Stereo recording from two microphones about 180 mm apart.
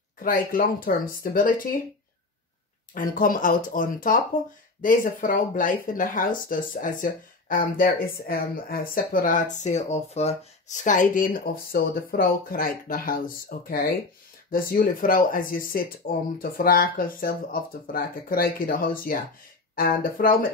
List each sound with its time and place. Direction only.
0.2 s speech: 55° left (ahead or behind)
2.9 s speech: 50° left (ahead or behind)